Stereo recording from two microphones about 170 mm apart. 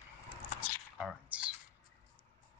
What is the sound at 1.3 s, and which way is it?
Computer keyboard, 10° right (ahead or behind).